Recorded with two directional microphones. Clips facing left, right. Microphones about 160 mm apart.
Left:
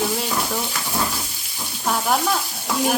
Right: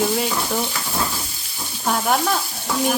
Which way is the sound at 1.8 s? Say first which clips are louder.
Right 1 dB; centre (ahead or behind).